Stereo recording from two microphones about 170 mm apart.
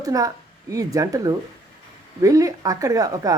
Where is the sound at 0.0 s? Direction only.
20° right (ahead or behind).